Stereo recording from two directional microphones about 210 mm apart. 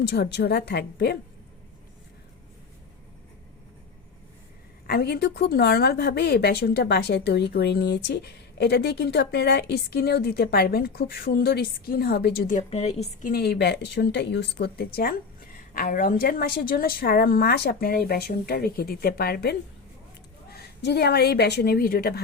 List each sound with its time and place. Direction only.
0.1 s a woman's voice: 50° left (ahead or behind)
4.9 s a woman's voice: 50° left (ahead or behind); by 13.3 s 30° left (ahead or behind)
13.3 s a woman's voice: 50° left (ahead or behind)
15.7 s a woman's voice: 40° left (ahead or behind)